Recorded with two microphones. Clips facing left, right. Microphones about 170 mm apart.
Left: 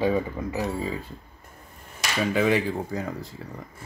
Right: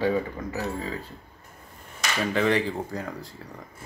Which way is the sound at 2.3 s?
10° left (ahead or behind).